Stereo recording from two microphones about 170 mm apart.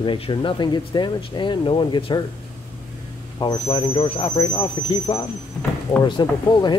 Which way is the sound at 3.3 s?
25° left (ahead or behind).